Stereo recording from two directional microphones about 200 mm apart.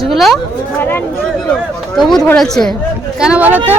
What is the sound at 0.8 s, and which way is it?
A woman's voice, 10° left (ahead or behind).